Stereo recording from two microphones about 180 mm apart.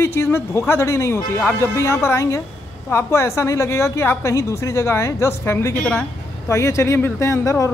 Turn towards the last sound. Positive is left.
turn(degrees=15)  # may be behind; listen again after turning